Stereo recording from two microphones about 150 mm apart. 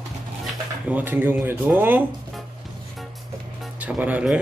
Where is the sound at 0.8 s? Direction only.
10° right (ahead or behind).